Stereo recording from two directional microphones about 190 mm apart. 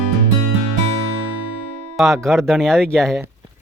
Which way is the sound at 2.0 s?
Centre (ahead or behind).